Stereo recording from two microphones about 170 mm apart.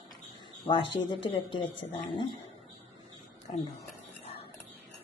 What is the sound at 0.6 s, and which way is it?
A woman's voice, 30° left (ahead or behind).